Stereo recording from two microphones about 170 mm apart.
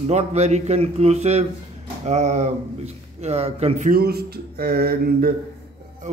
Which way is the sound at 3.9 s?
65° right (ahead or behind).